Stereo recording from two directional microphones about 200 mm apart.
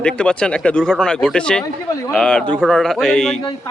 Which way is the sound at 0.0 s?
5° left (ahead or behind).